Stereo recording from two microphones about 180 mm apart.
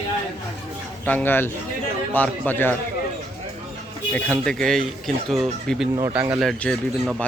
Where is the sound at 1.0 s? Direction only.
10° left (ahead or behind).